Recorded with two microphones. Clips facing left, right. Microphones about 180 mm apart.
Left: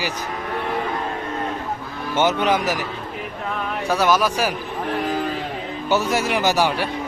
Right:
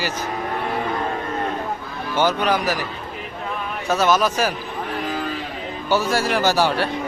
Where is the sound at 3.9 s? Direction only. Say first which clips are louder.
Right 1 dB; 10° left (ahead or behind).